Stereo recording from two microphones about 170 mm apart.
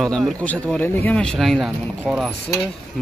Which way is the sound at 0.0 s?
5° left (ahead or behind).